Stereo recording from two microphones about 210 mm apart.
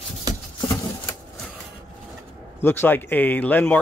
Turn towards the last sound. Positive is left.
turn(degrees=10)  # may be behind; listen again after turning